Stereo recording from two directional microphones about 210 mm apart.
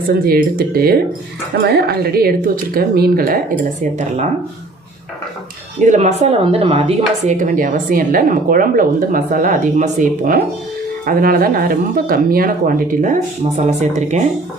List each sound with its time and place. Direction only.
0.1 s speech: 45° right (ahead or behind)
5.8 s a woman's voice: 35° right (ahead or behind)